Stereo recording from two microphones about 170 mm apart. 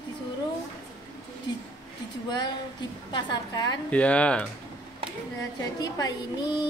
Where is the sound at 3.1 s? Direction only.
25° left (ahead or behind).